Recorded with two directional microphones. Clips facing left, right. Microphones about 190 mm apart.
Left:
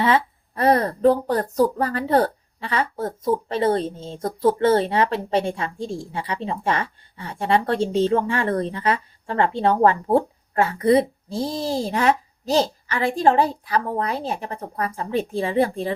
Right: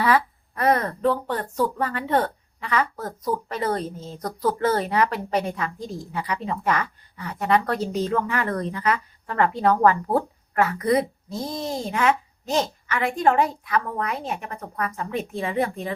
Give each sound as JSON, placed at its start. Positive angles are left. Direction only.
{"t": 0.0, "sound": "speech", "side_deg": 25}